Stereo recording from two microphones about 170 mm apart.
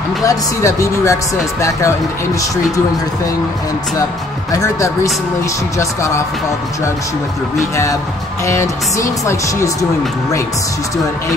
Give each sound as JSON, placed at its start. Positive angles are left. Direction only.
{"t": 0.2, "sound": "speech", "side_deg": 20}
{"t": 4.5, "sound": "speech", "side_deg": 20}
{"t": 7.7, "sound": "speech", "side_deg": 20}